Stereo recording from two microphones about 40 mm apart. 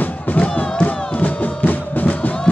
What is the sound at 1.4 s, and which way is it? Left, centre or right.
Music, left.